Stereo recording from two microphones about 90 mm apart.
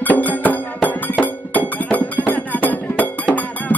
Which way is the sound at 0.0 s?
20° left (ahead or behind).